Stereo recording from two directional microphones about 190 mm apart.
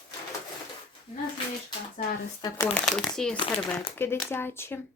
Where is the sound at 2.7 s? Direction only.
5° left (ahead or behind).